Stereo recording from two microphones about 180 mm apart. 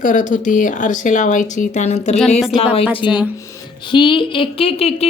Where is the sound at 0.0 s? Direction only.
45° left (ahead or behind).